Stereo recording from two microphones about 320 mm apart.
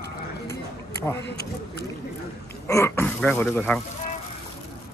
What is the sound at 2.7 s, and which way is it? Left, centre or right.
Throat clearing, centre.